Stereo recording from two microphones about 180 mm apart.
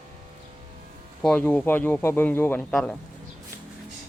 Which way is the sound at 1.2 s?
5° left (ahead or behind).